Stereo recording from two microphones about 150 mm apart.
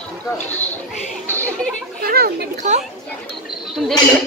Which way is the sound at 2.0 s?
90° right.